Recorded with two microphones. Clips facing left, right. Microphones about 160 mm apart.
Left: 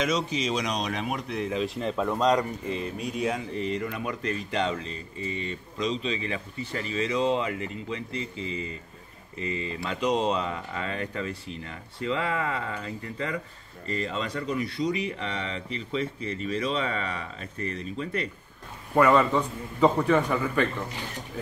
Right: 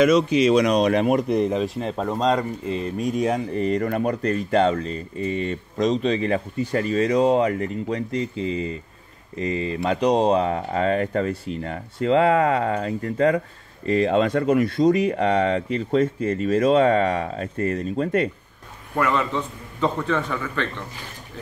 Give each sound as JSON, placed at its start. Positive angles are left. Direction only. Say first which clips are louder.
{"t": 0.0, "sound": "speech", "louder": "right 11 dB", "side_deg": -60}
{"t": 3.0, "sound": "speech", "louder": "right 9 dB", "side_deg": -45}
{"t": 18.9, "sound": "a man's voice", "louder": "left 2 dB", "side_deg": 5}